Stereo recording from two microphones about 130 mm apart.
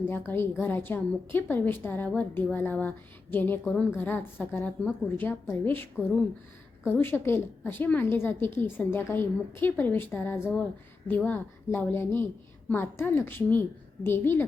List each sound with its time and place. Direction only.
0.0 s a woman's voice: 15° left (ahead or behind)